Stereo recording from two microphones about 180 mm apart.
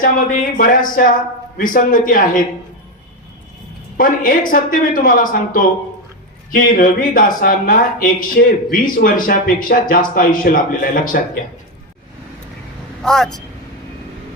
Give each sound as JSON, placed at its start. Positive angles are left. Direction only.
{"t": 0.5, "sound": "speech", "side_deg": 50}
{"t": 3.9, "sound": "speech", "side_deg": 50}
{"t": 13.0, "sound": "speech", "side_deg": 5}